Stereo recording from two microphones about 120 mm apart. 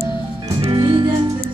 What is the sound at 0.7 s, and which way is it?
Music, 40° right (ahead or behind).